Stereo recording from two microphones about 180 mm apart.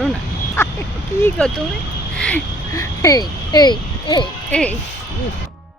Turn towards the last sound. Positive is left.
turn(degrees=5)  # may be behind; listen again after turning